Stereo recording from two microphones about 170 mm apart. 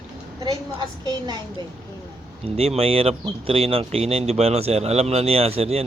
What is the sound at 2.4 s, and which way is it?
Speech, 35° right (ahead or behind).